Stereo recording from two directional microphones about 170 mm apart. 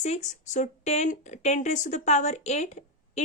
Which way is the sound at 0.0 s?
40° left (ahead or behind).